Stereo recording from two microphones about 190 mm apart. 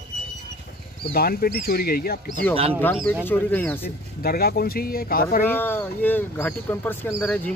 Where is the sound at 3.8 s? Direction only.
55° left (ahead or behind).